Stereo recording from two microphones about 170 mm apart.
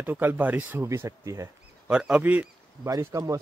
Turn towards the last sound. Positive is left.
turn(degrees=-20)  # may be behind; listen again after turning